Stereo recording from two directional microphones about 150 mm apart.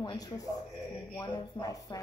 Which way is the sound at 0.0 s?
25° left (ahead or behind).